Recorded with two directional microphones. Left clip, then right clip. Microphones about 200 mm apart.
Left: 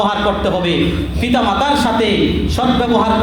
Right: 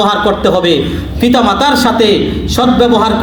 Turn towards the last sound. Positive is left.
turn(degrees=-30)  # may be behind; listen again after turning